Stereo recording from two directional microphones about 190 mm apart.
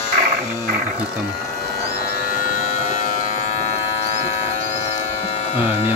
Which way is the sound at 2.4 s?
40° left (ahead or behind).